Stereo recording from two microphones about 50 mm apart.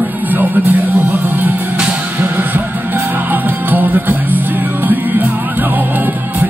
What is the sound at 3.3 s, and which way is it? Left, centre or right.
Music, right.